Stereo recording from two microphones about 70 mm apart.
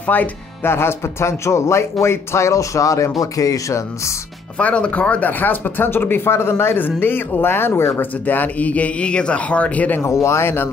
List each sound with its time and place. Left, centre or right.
0.0 s speech: left
0.7 s speech: left
4.6 s speech: centre
10.0 s speech: left